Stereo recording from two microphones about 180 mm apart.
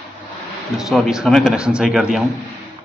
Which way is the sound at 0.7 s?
Centre (ahead or behind).